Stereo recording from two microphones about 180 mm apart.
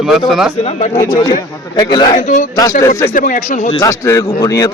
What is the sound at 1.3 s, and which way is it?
Speech, 25° left (ahead or behind).